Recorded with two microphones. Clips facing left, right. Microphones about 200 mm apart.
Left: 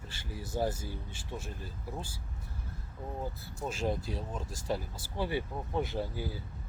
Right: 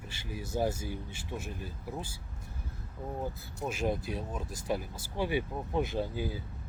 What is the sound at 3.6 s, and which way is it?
Speech, 15° right (ahead or behind).